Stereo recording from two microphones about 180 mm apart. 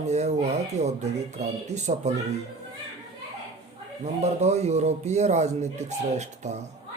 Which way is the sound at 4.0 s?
40° right (ahead or behind).